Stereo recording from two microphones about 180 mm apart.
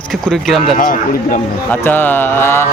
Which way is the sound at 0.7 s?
50° left (ahead or behind).